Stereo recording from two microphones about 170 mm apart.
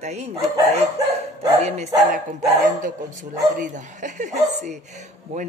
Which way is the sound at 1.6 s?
40° right (ahead or behind).